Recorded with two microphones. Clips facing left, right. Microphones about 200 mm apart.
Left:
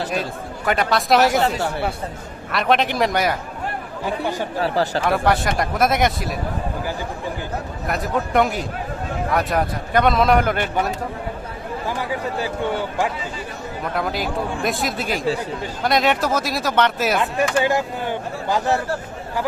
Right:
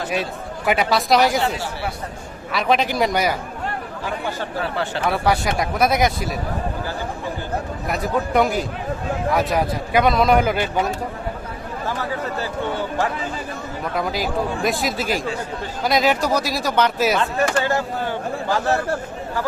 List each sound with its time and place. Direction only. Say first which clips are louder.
0.6 s a man's voice: right 1 dB; 5° right (ahead or behind)
2.5 s a man's voice: even; centre (ahead or behind)
4.6 s speech: left 6 dB; 35° left (ahead or behind)
5.0 s a man's voice: right 3 dB; centre (ahead or behind)
7.9 s a man's voice: even; centre (ahead or behind)
11.9 s speech: even; 15° left (ahead or behind)
13.9 s a man's voice: right 1 dB; centre (ahead or behind)
17.2 s speech: left 1 dB; 15° left (ahead or behind)